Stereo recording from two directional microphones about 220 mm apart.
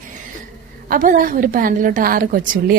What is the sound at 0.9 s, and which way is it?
A woman's voice, 40° right (ahead or behind).